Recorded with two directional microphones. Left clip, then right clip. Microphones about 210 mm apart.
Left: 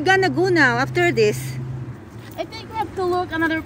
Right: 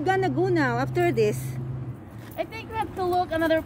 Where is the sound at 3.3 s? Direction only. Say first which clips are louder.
Left 1 dB; 45° right (ahead or behind).